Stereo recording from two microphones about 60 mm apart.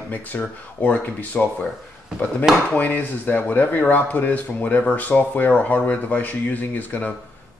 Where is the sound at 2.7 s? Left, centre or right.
Left.